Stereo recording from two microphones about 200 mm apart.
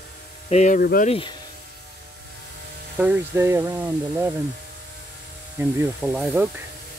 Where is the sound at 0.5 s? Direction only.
35° left (ahead or behind).